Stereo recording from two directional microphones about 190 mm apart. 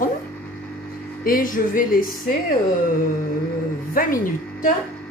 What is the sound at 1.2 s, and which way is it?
A woman's voice, 45° left (ahead or behind).